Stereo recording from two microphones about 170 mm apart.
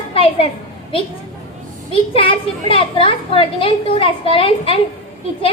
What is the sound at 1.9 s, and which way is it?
A woman's voice, 30° left (ahead or behind).